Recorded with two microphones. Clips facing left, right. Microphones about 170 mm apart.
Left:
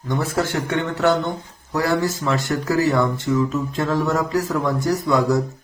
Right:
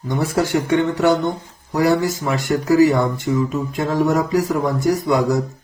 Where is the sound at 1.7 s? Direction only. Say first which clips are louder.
Right 4 dB; 15° right (ahead or behind).